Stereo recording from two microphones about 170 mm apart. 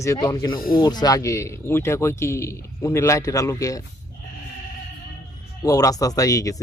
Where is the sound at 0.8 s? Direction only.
25° left (ahead or behind).